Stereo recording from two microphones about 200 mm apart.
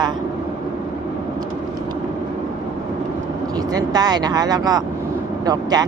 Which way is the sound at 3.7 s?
20° right (ahead or behind).